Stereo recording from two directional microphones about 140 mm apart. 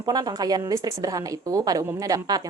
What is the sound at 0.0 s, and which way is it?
Speech, 25° right (ahead or behind).